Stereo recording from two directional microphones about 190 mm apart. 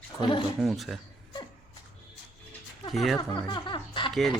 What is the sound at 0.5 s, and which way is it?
Speech, centre (ahead or behind).